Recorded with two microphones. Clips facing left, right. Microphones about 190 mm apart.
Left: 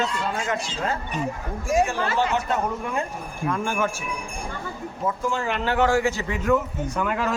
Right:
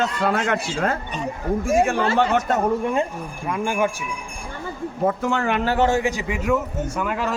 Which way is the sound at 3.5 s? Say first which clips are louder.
Right 3 dB; 15° right (ahead or behind).